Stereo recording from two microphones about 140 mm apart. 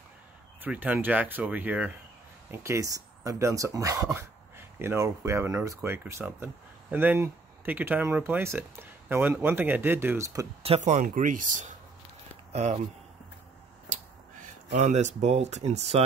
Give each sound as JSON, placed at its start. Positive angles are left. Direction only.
{"t": 0.6, "sound": "speech", "side_deg": -10}
{"t": 10.6, "sound": "speech", "side_deg": -50}
{"t": 14.7, "sound": "speech", "side_deg": -55}